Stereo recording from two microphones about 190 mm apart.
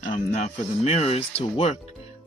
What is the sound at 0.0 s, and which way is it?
Speech, 35° left (ahead or behind).